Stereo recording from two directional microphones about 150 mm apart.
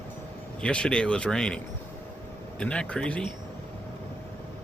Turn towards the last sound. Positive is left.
turn(degrees=5)  # may be behind; listen again after turning